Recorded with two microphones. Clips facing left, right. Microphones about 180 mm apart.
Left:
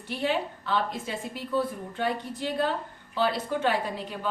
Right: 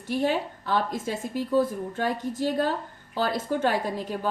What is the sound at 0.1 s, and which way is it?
A woman's voice, 45° right (ahead or behind).